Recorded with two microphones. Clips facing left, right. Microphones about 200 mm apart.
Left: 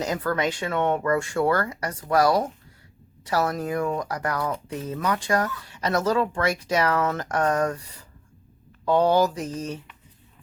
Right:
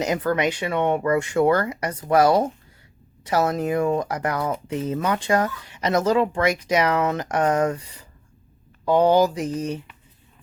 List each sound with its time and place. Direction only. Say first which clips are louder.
0.0 s speech: right 3 dB; 20° right (ahead or behind)
8.8 s speech: right 3 dB; 15° right (ahead or behind)